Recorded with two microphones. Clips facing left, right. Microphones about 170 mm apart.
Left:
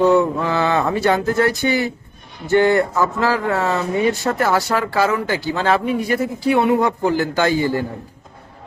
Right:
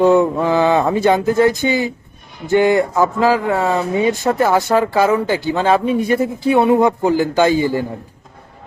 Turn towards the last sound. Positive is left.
turn(degrees=-15)  # may be behind; listen again after turning